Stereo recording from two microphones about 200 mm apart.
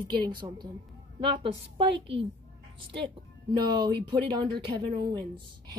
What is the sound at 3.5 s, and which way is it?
A woman's voice, 20° right (ahead or behind).